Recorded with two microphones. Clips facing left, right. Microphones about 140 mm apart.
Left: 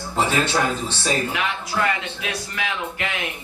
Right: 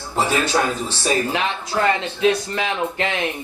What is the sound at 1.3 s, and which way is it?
Speech, 30° right (ahead or behind).